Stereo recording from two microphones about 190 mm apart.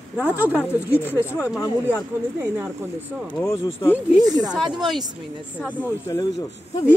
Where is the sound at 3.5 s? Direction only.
30° left (ahead or behind).